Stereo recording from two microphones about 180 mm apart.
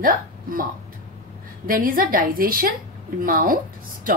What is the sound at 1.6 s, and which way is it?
A woman's voice, 50° right (ahead or behind).